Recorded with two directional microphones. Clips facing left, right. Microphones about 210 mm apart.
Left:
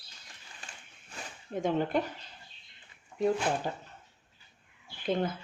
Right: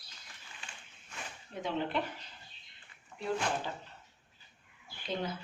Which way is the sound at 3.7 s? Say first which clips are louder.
Left 5 dB; 45° left (ahead or behind).